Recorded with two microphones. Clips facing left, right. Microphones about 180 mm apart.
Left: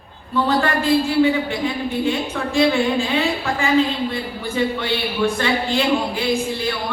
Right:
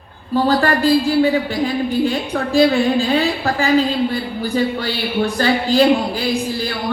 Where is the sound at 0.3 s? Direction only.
35° right (ahead or behind).